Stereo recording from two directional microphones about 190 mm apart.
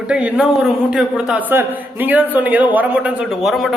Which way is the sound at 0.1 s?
5° right (ahead or behind).